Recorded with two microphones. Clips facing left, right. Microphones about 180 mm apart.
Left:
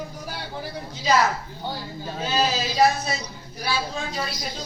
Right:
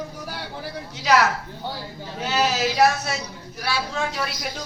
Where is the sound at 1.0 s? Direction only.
75° right (ahead or behind).